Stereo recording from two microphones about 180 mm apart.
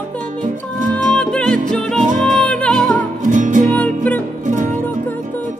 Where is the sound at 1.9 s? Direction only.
45° right (ahead or behind).